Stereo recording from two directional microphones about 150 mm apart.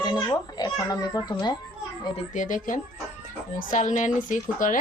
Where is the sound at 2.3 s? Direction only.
60° left (ahead or behind).